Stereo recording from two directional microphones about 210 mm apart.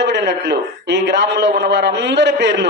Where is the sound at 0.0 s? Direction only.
55° right (ahead or behind).